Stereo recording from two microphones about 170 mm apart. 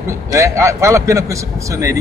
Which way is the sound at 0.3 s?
15° right (ahead or behind).